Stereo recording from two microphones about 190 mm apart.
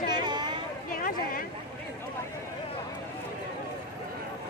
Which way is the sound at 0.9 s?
50° left (ahead or behind).